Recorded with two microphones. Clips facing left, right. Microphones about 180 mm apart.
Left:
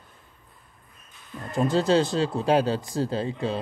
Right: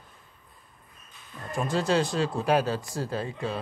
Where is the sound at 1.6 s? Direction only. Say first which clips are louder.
Left 4 dB; 35° left (ahead or behind).